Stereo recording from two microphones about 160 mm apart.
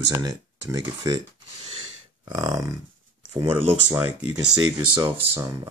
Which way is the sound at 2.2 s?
25° right (ahead or behind).